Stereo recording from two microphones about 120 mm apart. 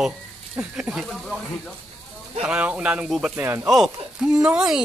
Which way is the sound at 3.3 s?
20° right (ahead or behind).